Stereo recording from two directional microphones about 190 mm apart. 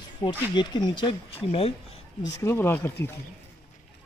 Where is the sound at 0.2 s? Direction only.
20° left (ahead or behind).